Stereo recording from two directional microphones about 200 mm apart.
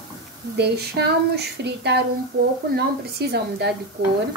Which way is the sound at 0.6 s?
55° right (ahead or behind).